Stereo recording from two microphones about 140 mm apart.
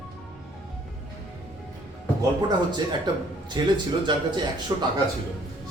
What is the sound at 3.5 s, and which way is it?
Speech, 35° right (ahead or behind).